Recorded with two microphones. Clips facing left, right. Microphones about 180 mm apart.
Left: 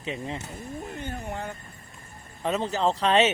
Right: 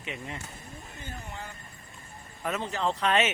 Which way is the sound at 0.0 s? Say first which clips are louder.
Left 6 dB; 30° left (ahead or behind).